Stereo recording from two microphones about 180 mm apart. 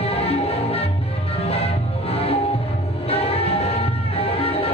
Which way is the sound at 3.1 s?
35° left (ahead or behind).